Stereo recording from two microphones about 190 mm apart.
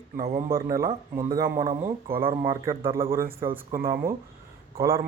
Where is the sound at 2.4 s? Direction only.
15° right (ahead or behind).